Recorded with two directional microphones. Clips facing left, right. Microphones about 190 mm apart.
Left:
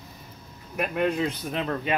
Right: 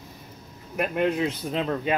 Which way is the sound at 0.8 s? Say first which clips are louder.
Right 1 dB; 15° right (ahead or behind).